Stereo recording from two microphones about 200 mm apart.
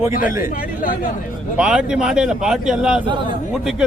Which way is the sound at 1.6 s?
5° right (ahead or behind).